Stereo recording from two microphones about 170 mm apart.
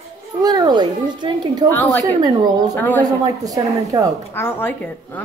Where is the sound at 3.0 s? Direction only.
20° right (ahead or behind).